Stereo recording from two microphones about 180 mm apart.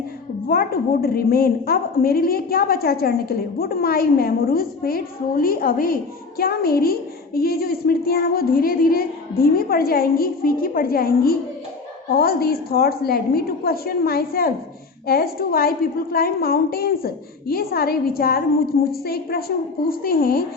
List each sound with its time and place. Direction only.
0.4 s a woman's voice: 55° left (ahead or behind)